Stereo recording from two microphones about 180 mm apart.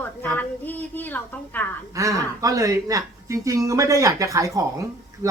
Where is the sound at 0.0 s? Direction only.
10° left (ahead or behind).